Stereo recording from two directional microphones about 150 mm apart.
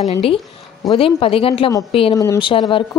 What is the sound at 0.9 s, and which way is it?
Speech, 40° left (ahead or behind).